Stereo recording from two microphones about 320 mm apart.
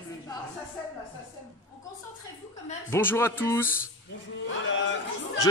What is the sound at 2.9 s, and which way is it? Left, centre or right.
Speech, centre.